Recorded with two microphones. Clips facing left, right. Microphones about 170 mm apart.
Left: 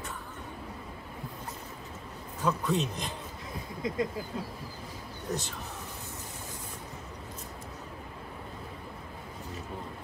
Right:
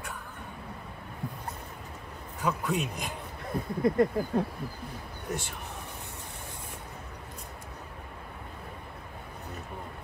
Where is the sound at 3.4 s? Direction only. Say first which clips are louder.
Right 9 dB; 60° right (ahead or behind).